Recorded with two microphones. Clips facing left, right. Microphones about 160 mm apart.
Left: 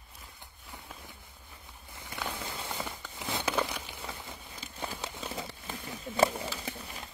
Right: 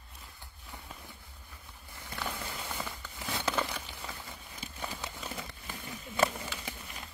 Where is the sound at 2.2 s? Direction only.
5° left (ahead or behind).